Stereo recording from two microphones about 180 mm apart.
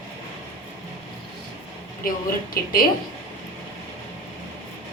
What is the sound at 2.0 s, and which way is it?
Speech, 55° left (ahead or behind).